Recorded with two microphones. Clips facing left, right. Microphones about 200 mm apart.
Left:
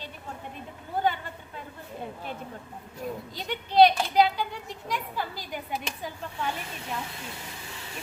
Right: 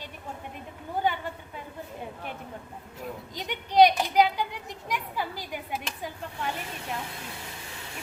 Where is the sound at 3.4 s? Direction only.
15° right (ahead or behind).